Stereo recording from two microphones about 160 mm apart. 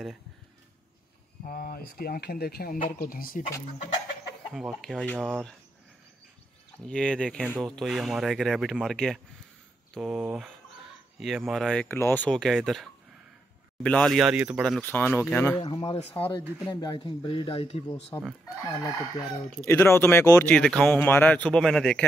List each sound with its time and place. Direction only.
1.4 s speech: 65° left (ahead or behind)
4.6 s speech: centre (ahead or behind)
6.9 s speech: 5° left (ahead or behind)
14.6 s speech: 5° left (ahead or behind)
15.6 s speech: 30° left (ahead or behind)
19.6 s speech: 15° left (ahead or behind)
20.5 s speech: 5° left (ahead or behind)